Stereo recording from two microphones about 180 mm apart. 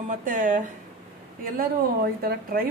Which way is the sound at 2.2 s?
55° right (ahead or behind).